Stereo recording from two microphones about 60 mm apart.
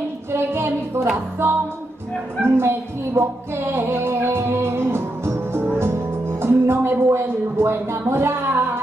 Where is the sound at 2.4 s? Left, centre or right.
Right.